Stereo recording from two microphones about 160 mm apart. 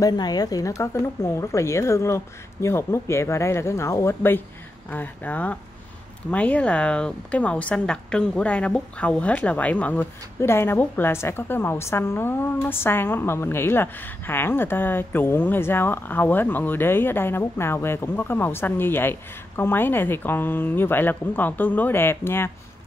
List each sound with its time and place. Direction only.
0.0 s a woman's voice: 25° left (ahead or behind)